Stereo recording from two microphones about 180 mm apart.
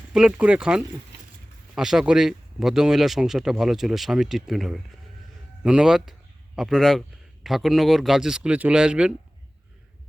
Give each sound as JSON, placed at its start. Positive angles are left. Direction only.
{"t": 0.1, "sound": "speech", "side_deg": -5}